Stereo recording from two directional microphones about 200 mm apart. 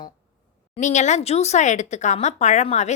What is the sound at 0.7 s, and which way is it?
Speech, 35° left (ahead or behind).